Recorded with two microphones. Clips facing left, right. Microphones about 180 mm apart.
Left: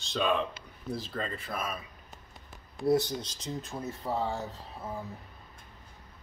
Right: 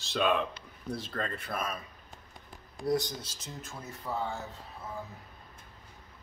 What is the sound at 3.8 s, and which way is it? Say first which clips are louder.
Speech: left 2 dB; 30° left (ahead or behind).